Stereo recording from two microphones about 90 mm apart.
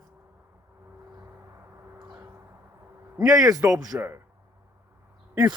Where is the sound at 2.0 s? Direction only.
50° right (ahead or behind).